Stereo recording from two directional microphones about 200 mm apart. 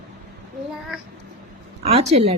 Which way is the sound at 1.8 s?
30° right (ahead or behind).